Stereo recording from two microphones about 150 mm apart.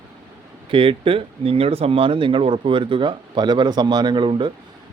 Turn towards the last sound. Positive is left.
turn(degrees=-30)  # may be behind; listen again after turning